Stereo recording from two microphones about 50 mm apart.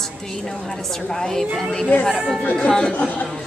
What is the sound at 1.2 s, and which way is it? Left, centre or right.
Speech, centre.